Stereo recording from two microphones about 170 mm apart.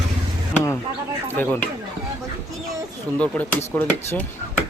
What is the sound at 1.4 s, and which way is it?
Speech, 10° left (ahead or behind).